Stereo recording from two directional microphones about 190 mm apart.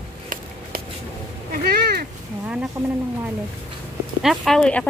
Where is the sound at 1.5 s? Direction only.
55° right (ahead or behind).